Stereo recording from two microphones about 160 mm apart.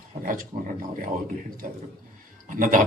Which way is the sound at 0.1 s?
60° right (ahead or behind).